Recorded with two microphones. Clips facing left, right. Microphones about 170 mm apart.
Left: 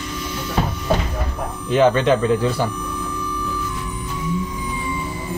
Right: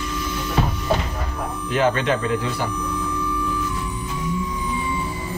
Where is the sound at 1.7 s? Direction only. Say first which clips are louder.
Left 5 dB; 30° left (ahead or behind).